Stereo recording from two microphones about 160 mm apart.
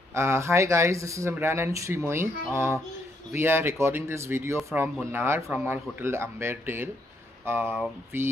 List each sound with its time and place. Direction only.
0.1 s speech: 15° right (ahead or behind)